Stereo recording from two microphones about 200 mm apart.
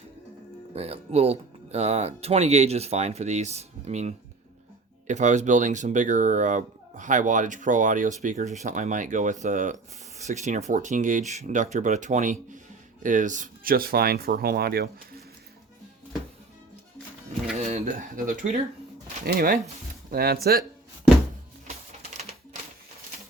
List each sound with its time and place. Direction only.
0.7 s speech: 30° right (ahead or behind); by 14.8 s 50° right (ahead or behind)
17.6 s speech: 35° right (ahead or behind)